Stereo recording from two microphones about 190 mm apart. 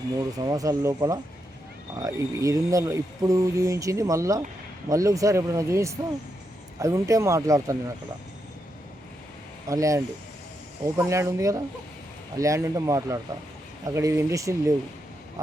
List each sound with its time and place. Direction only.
0.3 s speech: 20° right (ahead or behind)
9.6 s speech: 15° right (ahead or behind)